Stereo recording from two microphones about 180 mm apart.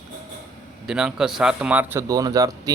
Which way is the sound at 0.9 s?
5° right (ahead or behind).